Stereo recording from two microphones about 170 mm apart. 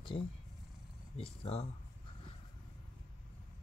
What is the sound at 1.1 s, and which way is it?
Speech, 35° left (ahead or behind).